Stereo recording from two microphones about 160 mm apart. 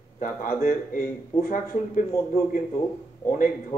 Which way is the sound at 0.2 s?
55° left (ahead or behind).